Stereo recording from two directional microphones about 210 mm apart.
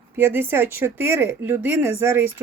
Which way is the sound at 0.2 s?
10° right (ahead or behind).